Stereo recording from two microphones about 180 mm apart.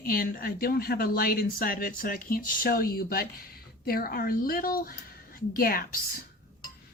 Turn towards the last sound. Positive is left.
turn(degrees=55)  # may be behind; listen again after turning